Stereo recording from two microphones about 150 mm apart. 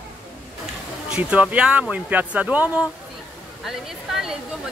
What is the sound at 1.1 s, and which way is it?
Speech, 10° right (ahead or behind).